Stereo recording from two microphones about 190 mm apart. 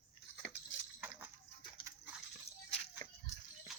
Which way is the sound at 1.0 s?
10° right (ahead or behind).